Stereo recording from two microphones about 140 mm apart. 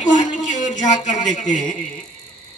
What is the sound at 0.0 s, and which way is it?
A man's voice, 60° left (ahead or behind).